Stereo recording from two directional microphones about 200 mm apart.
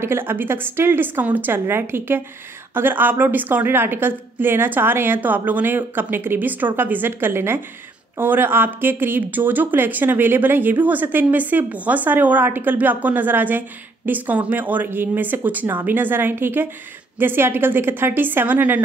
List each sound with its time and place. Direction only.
0.0 s speech: 10° right (ahead or behind)